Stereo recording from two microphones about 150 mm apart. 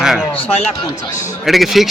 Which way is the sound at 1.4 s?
Centre (ahead or behind).